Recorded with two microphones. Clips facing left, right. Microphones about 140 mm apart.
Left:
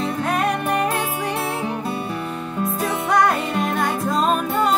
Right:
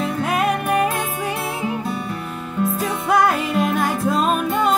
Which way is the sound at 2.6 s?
Centre (ahead or behind).